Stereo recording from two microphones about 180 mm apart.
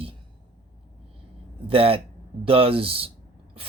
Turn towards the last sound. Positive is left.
turn(degrees=-30)  # may be behind; listen again after turning